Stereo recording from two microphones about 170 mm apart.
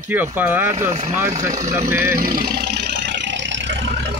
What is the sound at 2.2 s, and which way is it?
Vehicle, 60° right (ahead or behind).